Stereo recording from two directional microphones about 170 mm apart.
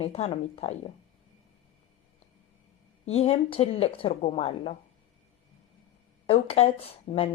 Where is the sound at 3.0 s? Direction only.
35° left (ahead or behind).